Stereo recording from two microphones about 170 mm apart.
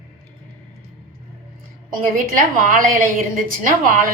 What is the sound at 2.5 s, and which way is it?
A woman's voice, 50° right (ahead or behind).